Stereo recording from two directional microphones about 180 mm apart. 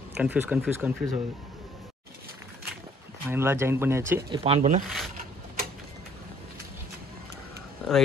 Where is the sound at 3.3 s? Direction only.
15° right (ahead or behind).